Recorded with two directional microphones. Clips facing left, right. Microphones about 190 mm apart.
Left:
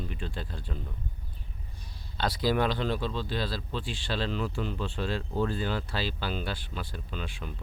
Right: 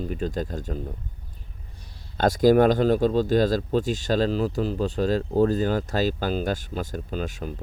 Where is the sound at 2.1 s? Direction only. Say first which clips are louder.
Right 10 dB; 45° right (ahead or behind).